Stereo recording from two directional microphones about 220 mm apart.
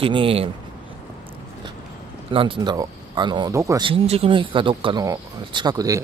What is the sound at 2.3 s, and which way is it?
Speech, 25° right (ahead or behind).